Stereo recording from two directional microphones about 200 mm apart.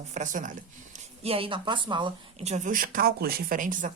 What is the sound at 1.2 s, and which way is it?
Speech, 30° right (ahead or behind).